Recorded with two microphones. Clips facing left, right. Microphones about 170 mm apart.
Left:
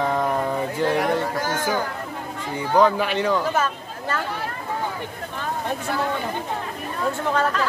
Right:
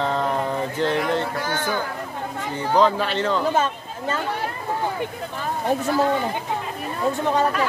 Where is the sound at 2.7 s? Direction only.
10° left (ahead or behind).